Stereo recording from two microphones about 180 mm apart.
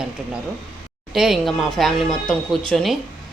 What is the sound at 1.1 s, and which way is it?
Speech, centre (ahead or behind).